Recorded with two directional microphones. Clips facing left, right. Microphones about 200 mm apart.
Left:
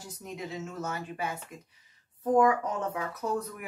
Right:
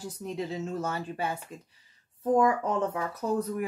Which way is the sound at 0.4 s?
30° right (ahead or behind).